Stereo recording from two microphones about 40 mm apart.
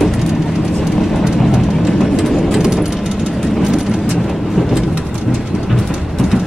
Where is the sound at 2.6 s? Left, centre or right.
Centre.